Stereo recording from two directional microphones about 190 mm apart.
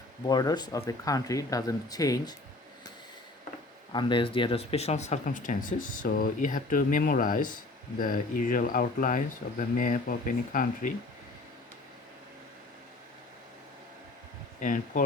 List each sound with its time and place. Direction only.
0.3 s speech: 20° left (ahead or behind)
3.9 s speech: 25° left (ahead or behind); by 10.9 s 45° left (ahead or behind)
14.6 s speech: 40° left (ahead or behind)